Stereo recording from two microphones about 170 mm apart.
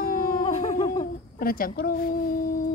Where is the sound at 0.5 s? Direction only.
40° left (ahead or behind).